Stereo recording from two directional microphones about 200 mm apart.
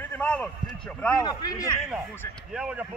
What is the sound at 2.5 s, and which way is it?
Speech, 5° right (ahead or behind).